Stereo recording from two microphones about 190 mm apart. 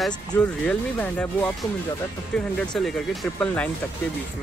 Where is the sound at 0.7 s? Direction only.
10° left (ahead or behind).